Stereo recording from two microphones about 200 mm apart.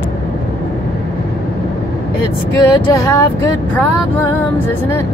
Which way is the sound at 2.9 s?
15° left (ahead or behind).